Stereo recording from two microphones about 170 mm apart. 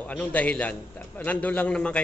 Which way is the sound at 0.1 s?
10° left (ahead or behind).